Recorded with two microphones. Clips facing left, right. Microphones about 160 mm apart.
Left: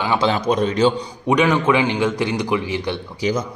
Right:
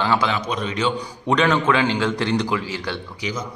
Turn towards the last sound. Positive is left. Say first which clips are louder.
# left 8 dB
turn(degrees=35)  # may be behind; listen again after turning